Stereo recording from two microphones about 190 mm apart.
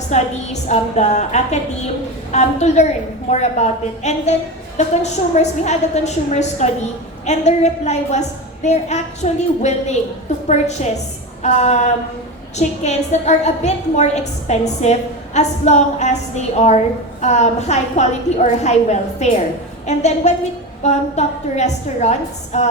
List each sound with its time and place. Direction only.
0.1 s a woman's voice: 35° left (ahead or behind)
11.4 s a woman's voice: 35° left (ahead or behind)